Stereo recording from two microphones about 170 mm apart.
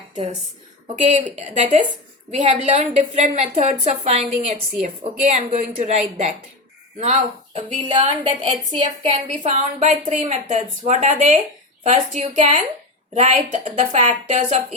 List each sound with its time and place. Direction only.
0.9 s a woman's voice: 45° right (ahead or behind)
9.5 s speech: 45° right (ahead or behind)